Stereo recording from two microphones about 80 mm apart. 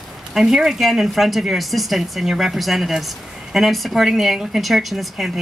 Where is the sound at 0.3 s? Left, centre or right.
Centre.